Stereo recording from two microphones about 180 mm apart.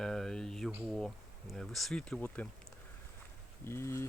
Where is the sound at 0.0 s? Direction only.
5° left (ahead or behind).